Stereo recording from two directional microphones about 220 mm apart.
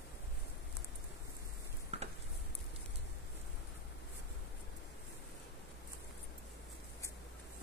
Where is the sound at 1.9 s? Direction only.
30° right (ahead or behind).